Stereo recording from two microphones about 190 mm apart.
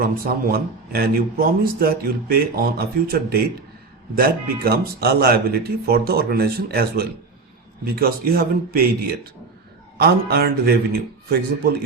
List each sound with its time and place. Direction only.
0.0 s speech: 50° right (ahead or behind)